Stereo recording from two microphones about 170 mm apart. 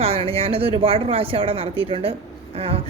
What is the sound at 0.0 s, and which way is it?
Speech, 35° right (ahead or behind).